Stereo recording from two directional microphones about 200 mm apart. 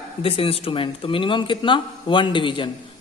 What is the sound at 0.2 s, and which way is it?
A man's voice, 30° left (ahead or behind).